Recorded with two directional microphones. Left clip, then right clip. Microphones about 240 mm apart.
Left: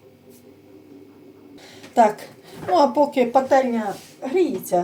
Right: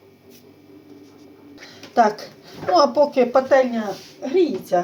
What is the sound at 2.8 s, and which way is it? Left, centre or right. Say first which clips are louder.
Speech: right 2 dB; centre.